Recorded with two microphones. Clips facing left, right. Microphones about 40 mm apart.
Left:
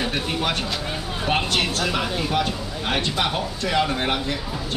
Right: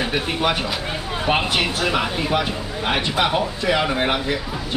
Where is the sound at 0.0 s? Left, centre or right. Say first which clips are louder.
Right 3 dB; centre.